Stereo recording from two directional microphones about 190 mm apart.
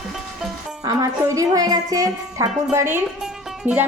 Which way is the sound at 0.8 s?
20° right (ahead or behind).